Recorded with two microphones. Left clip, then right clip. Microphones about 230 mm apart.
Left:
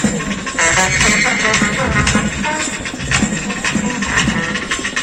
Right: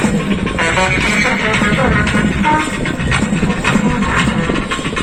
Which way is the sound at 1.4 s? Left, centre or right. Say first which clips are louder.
Right 1 dB; centre.